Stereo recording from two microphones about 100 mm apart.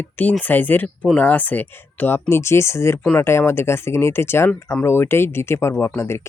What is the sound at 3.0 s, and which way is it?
Speech, 15° left (ahead or behind).